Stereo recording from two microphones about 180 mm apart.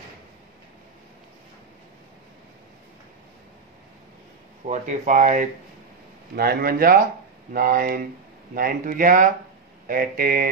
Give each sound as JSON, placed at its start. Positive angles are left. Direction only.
{"t": 4.6, "sound": "speech", "side_deg": -40}
{"t": 6.3, "sound": "speech", "side_deg": -60}